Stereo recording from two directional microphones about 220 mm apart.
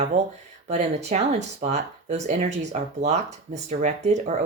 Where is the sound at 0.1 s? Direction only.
30° right (ahead or behind).